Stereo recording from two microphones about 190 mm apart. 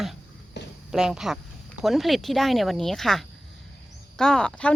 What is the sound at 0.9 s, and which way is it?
Speech, centre (ahead or behind).